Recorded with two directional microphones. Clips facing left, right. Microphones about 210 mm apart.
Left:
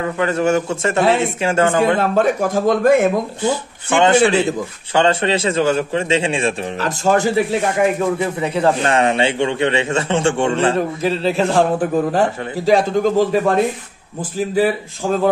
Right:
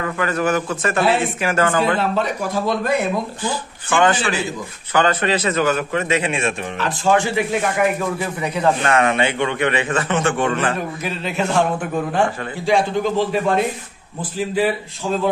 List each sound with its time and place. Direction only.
0.0 s a man's voice: 25° left (ahead or behind)
2.0 s a man's voice: 50° left (ahead or behind)
4.0 s a man's voice: 25° left (ahead or behind); by 7.4 s 40° left (ahead or behind)
7.8 s a man's voice: 25° left (ahead or behind); by 13.4 s 45° left (ahead or behind)
14.4 s a man's voice: 45° left (ahead or behind)